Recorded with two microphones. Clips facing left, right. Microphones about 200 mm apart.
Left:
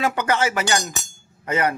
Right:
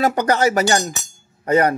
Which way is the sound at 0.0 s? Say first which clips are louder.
Right 5 dB; 40° right (ahead or behind).